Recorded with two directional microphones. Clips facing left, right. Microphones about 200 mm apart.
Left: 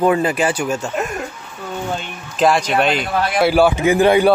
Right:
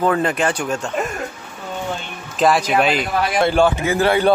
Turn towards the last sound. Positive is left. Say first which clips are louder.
# left 4 dB
turn(degrees=15)  # may be behind; listen again after turning